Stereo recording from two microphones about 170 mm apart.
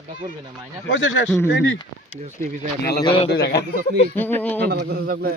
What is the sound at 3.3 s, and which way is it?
Speech, 80° left.